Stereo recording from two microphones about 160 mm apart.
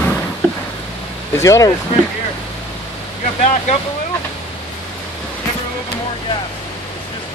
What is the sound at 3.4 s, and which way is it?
Speech, 45° left (ahead or behind).